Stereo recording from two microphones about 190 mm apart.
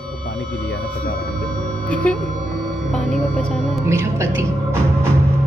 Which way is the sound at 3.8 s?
15° right (ahead or behind).